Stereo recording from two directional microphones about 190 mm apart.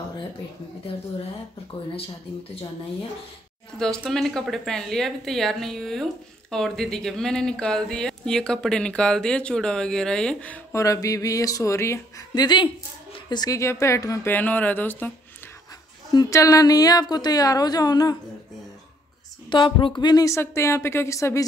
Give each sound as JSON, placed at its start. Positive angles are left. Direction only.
{"t": 3.7, "sound": "a woman's voice", "side_deg": 5}
{"t": 19.5, "sound": "a woman's voice", "side_deg": 25}